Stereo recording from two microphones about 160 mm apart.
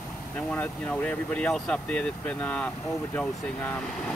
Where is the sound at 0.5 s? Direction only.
10° left (ahead or behind).